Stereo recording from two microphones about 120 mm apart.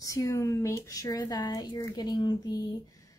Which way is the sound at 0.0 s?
25° left (ahead or behind).